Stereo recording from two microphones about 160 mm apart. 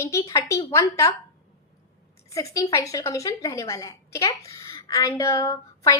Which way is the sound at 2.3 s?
20° left (ahead or behind).